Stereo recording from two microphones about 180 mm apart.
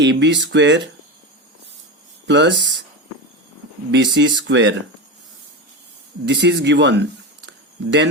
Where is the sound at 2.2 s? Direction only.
80° right.